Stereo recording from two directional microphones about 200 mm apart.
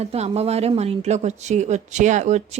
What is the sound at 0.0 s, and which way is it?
A woman's voice, 30° right (ahead or behind).